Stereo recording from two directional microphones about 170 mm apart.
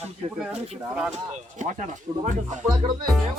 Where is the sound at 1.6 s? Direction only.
45° right (ahead or behind).